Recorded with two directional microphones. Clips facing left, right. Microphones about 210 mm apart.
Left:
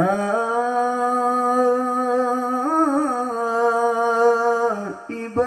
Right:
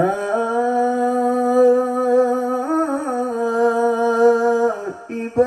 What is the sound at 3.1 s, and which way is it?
Humming, 30° right (ahead or behind).